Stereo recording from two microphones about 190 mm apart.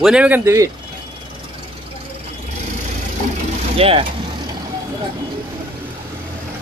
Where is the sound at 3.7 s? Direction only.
30° right (ahead or behind).